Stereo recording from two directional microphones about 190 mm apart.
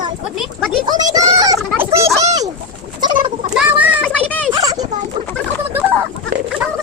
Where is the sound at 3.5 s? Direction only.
10° right (ahead or behind).